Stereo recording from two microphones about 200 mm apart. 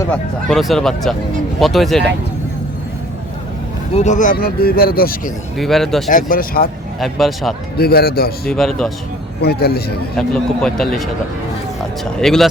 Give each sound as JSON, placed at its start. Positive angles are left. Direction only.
{"t": 0.4, "sound": "a man's voice", "side_deg": 0}
{"t": 3.9, "sound": "speech", "side_deg": 35}
{"t": 5.5, "sound": "a man's voice", "side_deg": 0}
{"t": 6.1, "sound": "speech", "side_deg": 45}
{"t": 7.0, "sound": "a man's voice", "side_deg": 0}
{"t": 7.8, "sound": "speech", "side_deg": 50}
{"t": 8.4, "sound": "a man's voice", "side_deg": 0}
{"t": 9.4, "sound": "speech", "side_deg": 50}
{"t": 10.2, "sound": "a man's voice", "side_deg": 5}
{"t": 12.2, "sound": "a man's voice", "side_deg": 0}